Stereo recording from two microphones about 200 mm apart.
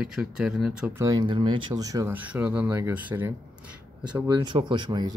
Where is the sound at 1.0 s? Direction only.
20° right (ahead or behind).